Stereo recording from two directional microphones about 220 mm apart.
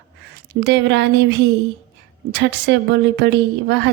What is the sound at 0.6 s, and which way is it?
A woman's voice, 50° right (ahead or behind).